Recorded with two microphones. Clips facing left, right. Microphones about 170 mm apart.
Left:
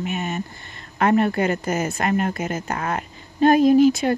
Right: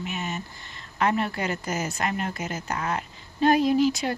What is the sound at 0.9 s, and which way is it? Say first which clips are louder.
A woman's voice: left 7 dB; 50° left (ahead or behind).